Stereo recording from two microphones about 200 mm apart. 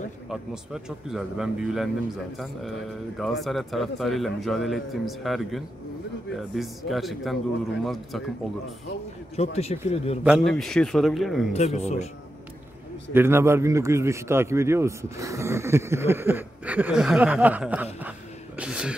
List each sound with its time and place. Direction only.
0.8 s a man's voice: centre (ahead or behind)
9.4 s a man's voice: 30° left (ahead or behind)
10.2 s a man's voice: centre (ahead or behind)
11.5 s a man's voice: 30° left (ahead or behind)
13.1 s a man's voice: 10° right (ahead or behind)